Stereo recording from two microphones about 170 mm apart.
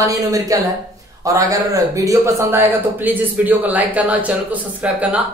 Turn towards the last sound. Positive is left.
turn(degrees=-10)  # may be behind; listen again after turning